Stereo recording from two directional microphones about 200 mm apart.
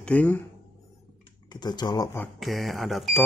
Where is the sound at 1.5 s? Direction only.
20° left (ahead or behind).